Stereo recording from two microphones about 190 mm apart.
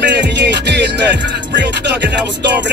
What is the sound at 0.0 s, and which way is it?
Music, 60° right (ahead or behind).